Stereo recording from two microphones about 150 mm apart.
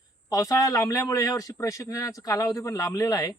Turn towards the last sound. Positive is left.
turn(degrees=25)  # may be behind; listen again after turning